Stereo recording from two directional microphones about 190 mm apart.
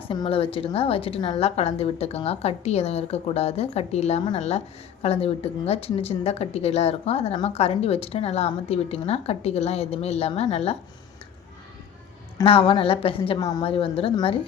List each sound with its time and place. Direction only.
0.1 s a woman's voice: 30° left (ahead or behind)
12.4 s a woman's voice: 30° left (ahead or behind)